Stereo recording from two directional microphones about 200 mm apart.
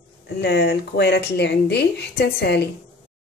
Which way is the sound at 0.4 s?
50° left (ahead or behind).